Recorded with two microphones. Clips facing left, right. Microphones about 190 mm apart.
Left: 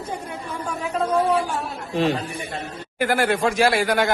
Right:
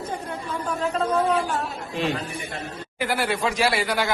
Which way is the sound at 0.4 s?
10° left (ahead or behind).